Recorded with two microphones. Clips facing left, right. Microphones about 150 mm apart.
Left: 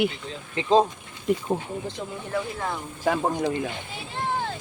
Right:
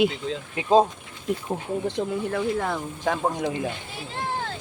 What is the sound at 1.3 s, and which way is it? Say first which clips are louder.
Speech: left 3 dB; centre (ahead or behind).